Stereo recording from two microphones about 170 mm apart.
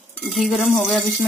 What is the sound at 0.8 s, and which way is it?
Speech, centre (ahead or behind).